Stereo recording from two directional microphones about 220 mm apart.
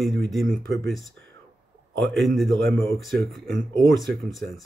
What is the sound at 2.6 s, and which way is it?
Speech, 55° right (ahead or behind).